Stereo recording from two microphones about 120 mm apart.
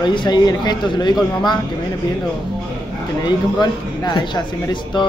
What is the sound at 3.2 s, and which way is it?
A man's voice, 35° left (ahead or behind).